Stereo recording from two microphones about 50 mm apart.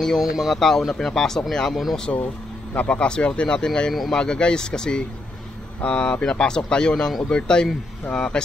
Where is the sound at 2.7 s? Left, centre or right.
Left.